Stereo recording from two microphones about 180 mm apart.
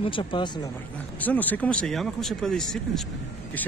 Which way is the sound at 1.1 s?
10° left (ahead or behind).